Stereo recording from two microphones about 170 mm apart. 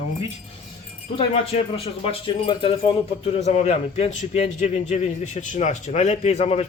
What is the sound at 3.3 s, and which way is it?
A man's voice, 40° left (ahead or behind).